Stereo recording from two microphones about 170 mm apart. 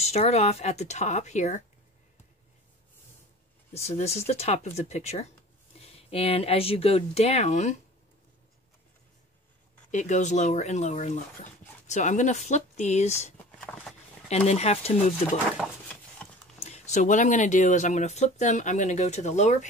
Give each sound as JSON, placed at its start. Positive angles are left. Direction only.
{"t": 0.0, "sound": "speech", "side_deg": 40}
{"t": 3.8, "sound": "speech", "side_deg": 40}
{"t": 9.8, "sound": "speech", "side_deg": 45}
{"t": 13.6, "sound": "a sound", "side_deg": 5}
{"t": 14.3, "sound": "speech", "side_deg": 40}
{"t": 16.6, "sound": "speech", "side_deg": 40}